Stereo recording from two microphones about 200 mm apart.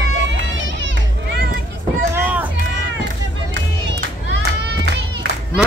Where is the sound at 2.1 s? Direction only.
10° right (ahead or behind).